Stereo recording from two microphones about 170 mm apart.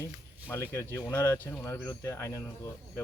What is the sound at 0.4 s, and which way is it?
Speech, 15° left (ahead or behind).